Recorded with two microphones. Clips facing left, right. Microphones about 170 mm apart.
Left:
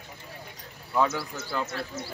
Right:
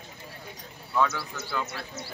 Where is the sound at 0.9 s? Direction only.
20° left (ahead or behind).